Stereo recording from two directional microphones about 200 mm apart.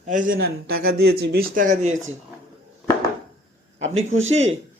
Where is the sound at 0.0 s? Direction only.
40° right (ahead or behind).